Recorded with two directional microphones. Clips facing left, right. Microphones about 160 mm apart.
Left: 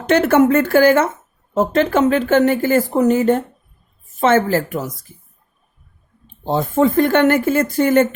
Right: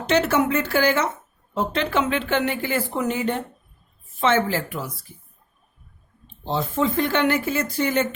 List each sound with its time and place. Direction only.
0.1 s speech: 50° left (ahead or behind)
6.4 s speech: 50° left (ahead or behind)